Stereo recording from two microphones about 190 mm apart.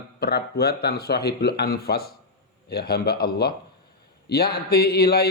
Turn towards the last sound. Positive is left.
turn(degrees=55)  # may be behind; listen again after turning